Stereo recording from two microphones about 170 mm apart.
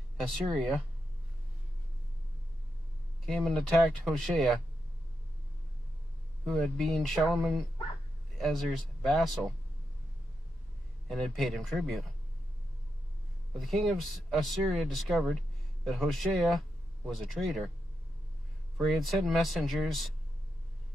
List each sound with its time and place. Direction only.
3.3 s speech: 5° left (ahead or behind)
6.4 s speech: centre (ahead or behind)
11.1 s speech: centre (ahead or behind)
13.6 s speech: centre (ahead or behind)
18.8 s speech: centre (ahead or behind)